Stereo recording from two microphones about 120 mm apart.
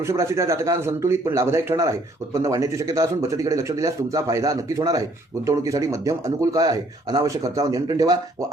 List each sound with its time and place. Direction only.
0.0 s speech: 25° right (ahead or behind)